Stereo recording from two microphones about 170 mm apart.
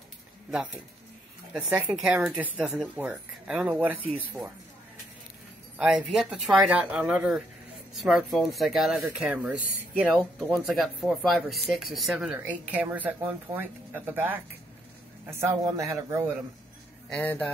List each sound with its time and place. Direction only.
0.5 s speech: 5° right (ahead or behind)
5.8 s speech: centre (ahead or behind)
17.1 s speech: 10° left (ahead or behind)